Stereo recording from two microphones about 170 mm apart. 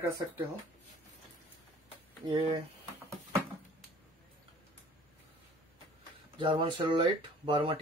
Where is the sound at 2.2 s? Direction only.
30° right (ahead or behind).